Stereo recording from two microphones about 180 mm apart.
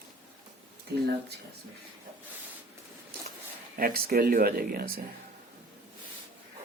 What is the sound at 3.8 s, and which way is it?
Speech, 55° right (ahead or behind).